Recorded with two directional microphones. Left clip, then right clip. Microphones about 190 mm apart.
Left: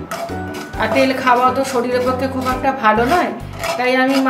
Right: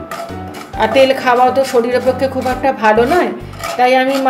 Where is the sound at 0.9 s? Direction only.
40° right (ahead or behind).